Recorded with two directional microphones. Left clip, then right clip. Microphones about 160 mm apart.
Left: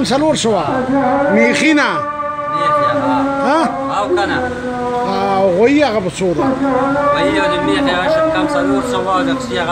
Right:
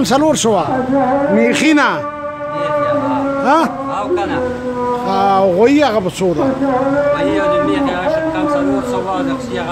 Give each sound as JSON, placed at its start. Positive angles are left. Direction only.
{"t": 0.1, "sound": "speech", "side_deg": -15}
{"t": 5.2, "sound": "speech", "side_deg": -10}
{"t": 7.2, "sound": "speech", "side_deg": 15}